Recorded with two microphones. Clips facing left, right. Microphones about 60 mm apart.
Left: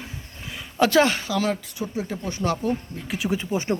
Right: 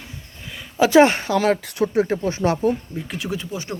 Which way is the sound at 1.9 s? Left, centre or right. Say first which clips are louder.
Right 9 dB; right.